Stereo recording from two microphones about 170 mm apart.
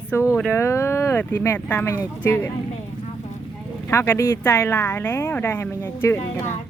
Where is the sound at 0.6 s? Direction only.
15° left (ahead or behind).